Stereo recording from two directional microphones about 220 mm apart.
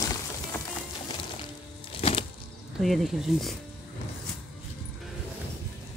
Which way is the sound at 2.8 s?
Centre (ahead or behind).